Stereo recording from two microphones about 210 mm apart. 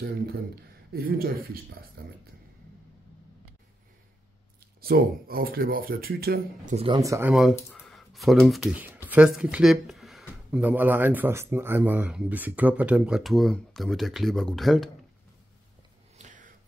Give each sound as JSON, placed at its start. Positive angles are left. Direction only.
{"t": 0.0, "sound": "speech", "side_deg": -45}
{"t": 4.8, "sound": "speech", "side_deg": -45}
{"t": 6.9, "sound": "speech", "side_deg": -15}
{"t": 16.2, "sound": "a sound", "side_deg": -35}